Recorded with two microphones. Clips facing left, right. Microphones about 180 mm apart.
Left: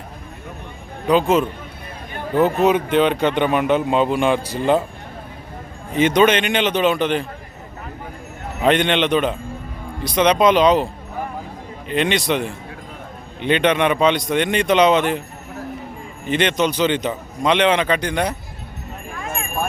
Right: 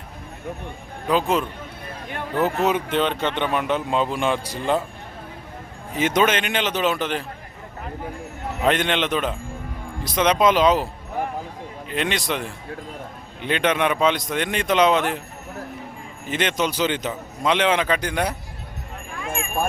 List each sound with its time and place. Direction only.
1.0 s a man's voice: centre (ahead or behind)
2.9 s a man's voice: 5° left (ahead or behind)
6.0 s a man's voice: 5° right (ahead or behind)
8.6 s a man's voice: centre (ahead or behind)
11.9 s a man's voice: centre (ahead or behind)
16.3 s a man's voice: 5° right (ahead or behind)
19.2 s clip-clop: 40° left (ahead or behind)